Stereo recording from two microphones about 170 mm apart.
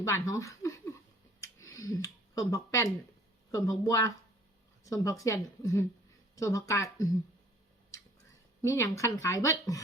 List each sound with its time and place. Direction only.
0.0 s speech: 15° left (ahead or behind)
1.4 s a sound: 20° left (ahead or behind)
3.5 s speech: 20° left (ahead or behind)
8.6 s speech: 15° left (ahead or behind)